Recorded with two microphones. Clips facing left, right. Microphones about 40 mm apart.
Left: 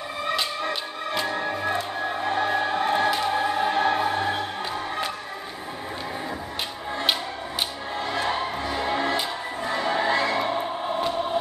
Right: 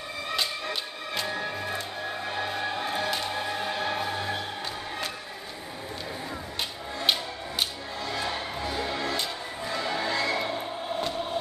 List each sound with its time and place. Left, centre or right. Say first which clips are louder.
1.2 s music: left 4 dB; left
2.8 s music: left 8 dB; left
3.3 s music: left 7 dB; centre
3.7 s music: left 7 dB; left
8.0 s music: left 6 dB; left